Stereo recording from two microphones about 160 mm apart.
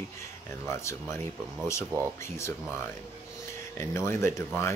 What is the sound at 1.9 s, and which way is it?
Speech, 20° right (ahead or behind).